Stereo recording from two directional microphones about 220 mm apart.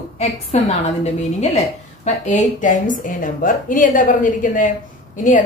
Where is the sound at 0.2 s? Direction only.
30° left (ahead or behind).